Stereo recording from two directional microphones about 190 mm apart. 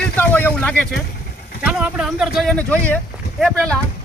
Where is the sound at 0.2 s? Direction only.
10° left (ahead or behind).